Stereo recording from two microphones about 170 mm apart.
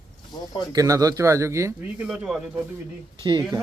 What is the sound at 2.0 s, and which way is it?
Speech, 5° right (ahead or behind).